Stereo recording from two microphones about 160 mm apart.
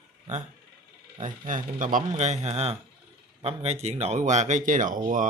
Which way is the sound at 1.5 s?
55° right (ahead or behind).